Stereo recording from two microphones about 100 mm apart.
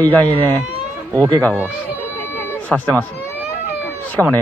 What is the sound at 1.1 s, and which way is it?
Speech, 30° right (ahead or behind).